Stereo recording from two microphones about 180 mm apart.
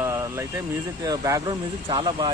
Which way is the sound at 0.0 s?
15° right (ahead or behind).